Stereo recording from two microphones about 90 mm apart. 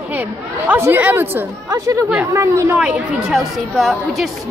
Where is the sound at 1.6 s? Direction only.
40° right (ahead or behind).